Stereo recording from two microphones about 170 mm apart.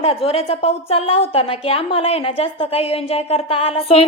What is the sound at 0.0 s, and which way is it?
A woman's voice, 35° left (ahead or behind).